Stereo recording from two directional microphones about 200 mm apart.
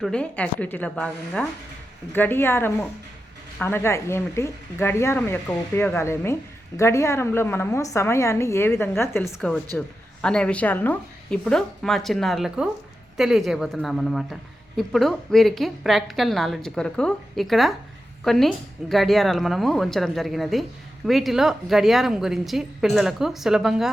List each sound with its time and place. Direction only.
0.0 s a woman's voice: 5° left (ahead or behind)